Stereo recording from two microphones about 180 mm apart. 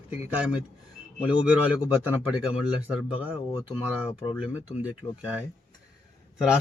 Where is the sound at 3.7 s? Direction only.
30° left (ahead or behind).